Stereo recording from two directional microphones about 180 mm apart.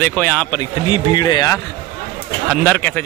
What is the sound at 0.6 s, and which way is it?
Speech, 25° left (ahead or behind).